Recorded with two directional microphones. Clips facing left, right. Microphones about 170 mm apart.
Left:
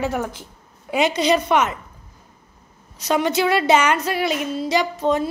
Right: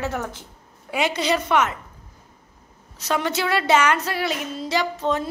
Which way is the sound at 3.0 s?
15° left (ahead or behind).